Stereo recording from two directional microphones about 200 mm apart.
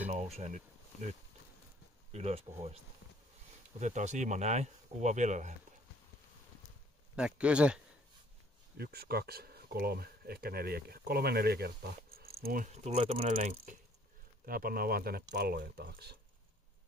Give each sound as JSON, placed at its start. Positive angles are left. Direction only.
{"t": 0.1, "sound": "bee", "side_deg": -35}
{"t": 2.1, "sound": "speech", "side_deg": -30}
{"t": 3.8, "sound": "speech", "side_deg": -35}
{"t": 7.2, "sound": "speech", "side_deg": -5}
{"t": 8.7, "sound": "speech", "side_deg": -50}
{"t": 12.7, "sound": "speech", "side_deg": -30}